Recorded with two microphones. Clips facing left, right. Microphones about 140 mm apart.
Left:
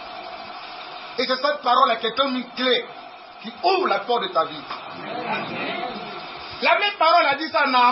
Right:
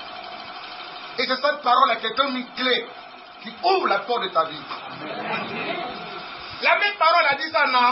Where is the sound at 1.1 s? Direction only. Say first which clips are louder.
Left 1 dB; 5° left (ahead or behind).